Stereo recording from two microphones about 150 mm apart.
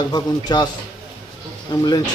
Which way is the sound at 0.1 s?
30° left (ahead or behind).